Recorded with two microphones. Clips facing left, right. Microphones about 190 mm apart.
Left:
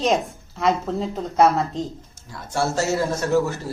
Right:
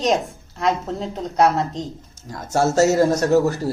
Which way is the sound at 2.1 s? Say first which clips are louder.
Right 5 dB; 40° right (ahead or behind).